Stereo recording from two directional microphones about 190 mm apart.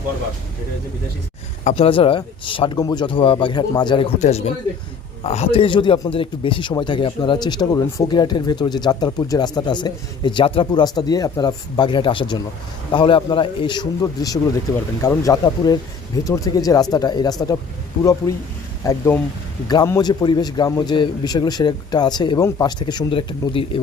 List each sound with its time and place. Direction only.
1.6 s a man's voice: 30° left (ahead or behind)